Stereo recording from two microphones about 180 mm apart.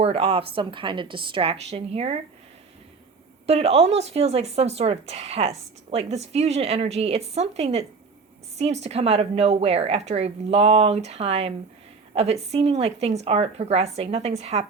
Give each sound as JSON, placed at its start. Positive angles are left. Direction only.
{"t": 0.0, "sound": "a woman's voice", "side_deg": -35}
{"t": 3.4, "sound": "a woman's voice", "side_deg": -35}